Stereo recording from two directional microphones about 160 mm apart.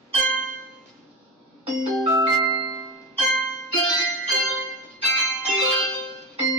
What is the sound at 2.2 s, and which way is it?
Music, 20° right (ahead or behind).